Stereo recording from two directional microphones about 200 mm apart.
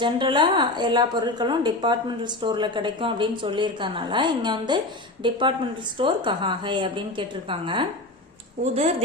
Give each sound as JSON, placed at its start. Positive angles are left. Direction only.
{"t": 0.0, "sound": "a woman's voice", "side_deg": -25}